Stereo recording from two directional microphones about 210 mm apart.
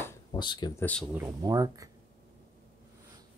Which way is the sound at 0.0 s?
15° left (ahead or behind).